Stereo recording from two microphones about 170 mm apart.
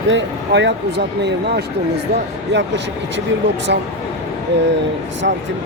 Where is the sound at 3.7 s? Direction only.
85° right.